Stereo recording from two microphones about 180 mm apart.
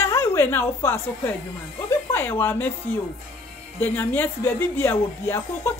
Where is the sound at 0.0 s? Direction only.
15° left (ahead or behind).